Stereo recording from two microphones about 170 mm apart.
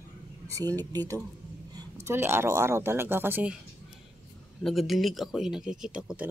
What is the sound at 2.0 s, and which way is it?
Speech, 15° right (ahead or behind).